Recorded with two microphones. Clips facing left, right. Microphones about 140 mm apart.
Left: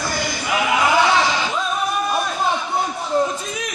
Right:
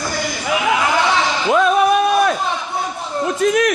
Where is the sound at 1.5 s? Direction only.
70° right (ahead or behind).